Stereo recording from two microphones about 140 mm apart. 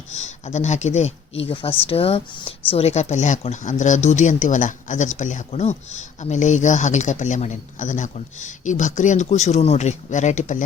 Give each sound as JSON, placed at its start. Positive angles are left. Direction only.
{"t": 0.1, "sound": "speech", "side_deg": 55}